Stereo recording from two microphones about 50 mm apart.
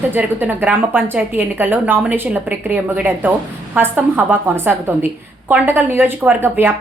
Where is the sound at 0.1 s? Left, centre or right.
Right.